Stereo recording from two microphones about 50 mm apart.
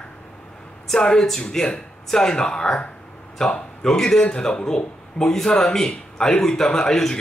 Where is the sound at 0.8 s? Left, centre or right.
Centre.